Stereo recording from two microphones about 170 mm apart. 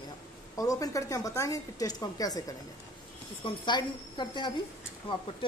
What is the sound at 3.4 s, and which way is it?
A woman's voice, 25° left (ahead or behind).